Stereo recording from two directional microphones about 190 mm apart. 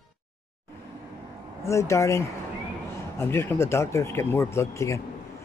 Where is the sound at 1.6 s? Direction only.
15° left (ahead or behind).